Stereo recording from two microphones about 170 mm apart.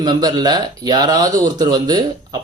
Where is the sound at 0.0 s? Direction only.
25° right (ahead or behind).